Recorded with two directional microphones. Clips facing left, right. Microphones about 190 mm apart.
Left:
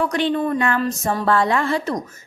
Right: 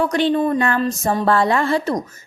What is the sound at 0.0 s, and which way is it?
A woman's voice, 35° right (ahead or behind).